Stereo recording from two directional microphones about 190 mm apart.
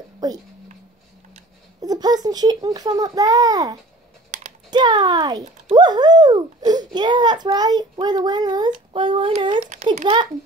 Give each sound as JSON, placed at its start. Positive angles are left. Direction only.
{"t": 0.2, "sound": "speech", "side_deg": -20}
{"t": 1.8, "sound": "a child's voice", "side_deg": -20}
{"t": 4.3, "sound": "typing", "side_deg": -35}
{"t": 4.6, "sound": "a child's voice", "side_deg": -20}